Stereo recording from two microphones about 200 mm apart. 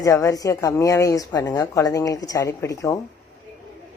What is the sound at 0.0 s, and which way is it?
A woman's voice, 15° left (ahead or behind).